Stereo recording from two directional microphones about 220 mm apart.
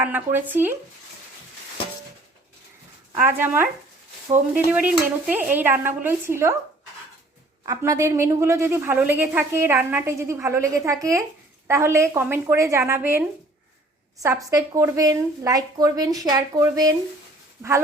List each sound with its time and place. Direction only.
0.0 s a woman's voice: 10° right (ahead or behind)
3.2 s a woman's voice: 10° right (ahead or behind)
7.6 s a woman's voice: 15° right (ahead or behind)